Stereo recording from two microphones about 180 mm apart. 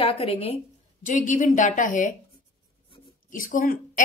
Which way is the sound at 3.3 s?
50° left (ahead or behind).